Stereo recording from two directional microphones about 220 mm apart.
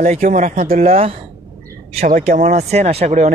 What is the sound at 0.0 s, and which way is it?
Speech, 35° right (ahead or behind).